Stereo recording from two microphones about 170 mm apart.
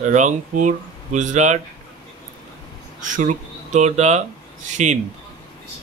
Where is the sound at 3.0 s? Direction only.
45° right (ahead or behind).